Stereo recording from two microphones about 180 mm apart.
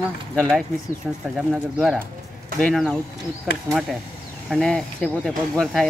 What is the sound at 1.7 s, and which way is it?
Speech, centre (ahead or behind).